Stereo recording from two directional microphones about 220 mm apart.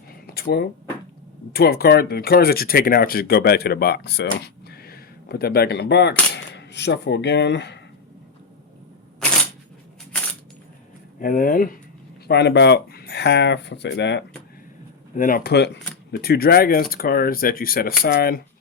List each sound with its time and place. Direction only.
0.3 s speech: 45° left (ahead or behind)
11.2 s speech: 40° left (ahead or behind)
12.3 s speech: 50° left (ahead or behind)
15.1 s speech: 40° left (ahead or behind)